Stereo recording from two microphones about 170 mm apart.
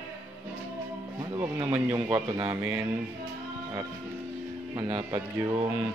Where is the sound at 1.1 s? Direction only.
25° right (ahead or behind).